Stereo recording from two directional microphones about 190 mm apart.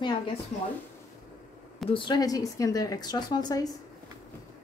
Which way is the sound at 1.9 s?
25° left (ahead or behind).